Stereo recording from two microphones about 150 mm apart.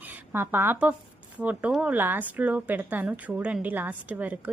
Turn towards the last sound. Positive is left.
turn(degrees=-10)  # may be behind; listen again after turning